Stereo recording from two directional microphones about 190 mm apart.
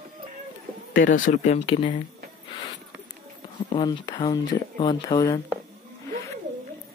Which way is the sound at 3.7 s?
25° left (ahead or behind).